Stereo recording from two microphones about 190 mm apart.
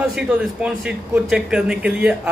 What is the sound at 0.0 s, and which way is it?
A man's voice, 5° right (ahead or behind).